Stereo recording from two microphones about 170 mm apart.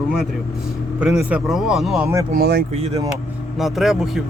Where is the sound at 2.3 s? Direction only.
65° right (ahead or behind).